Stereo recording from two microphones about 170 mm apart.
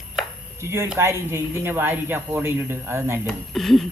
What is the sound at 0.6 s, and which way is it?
Speech, 15° right (ahead or behind).